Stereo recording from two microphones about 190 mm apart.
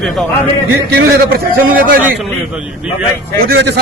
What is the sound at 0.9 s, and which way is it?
A man's voice, 50° right (ahead or behind).